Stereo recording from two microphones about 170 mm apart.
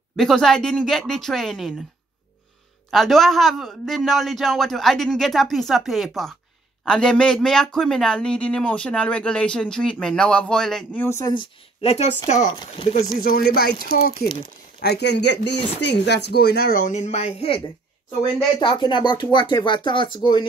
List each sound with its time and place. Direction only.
0.1 s speech: centre (ahead or behind)
2.9 s speech: centre (ahead or behind)
11.3 s speech: 40° left (ahead or behind)
12.4 s speech: 25° left (ahead or behind)
12.9 s speech: 60° left (ahead or behind)
14.8 s speech: 75° left (ahead or behind)
16.8 s speech: 40° left (ahead or behind)
18.6 s speech: 25° left (ahead or behind)